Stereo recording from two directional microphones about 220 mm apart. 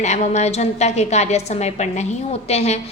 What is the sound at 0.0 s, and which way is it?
A woman's voice, 30° left (ahead or behind).